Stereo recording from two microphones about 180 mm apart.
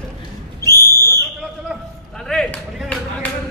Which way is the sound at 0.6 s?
20° left (ahead or behind).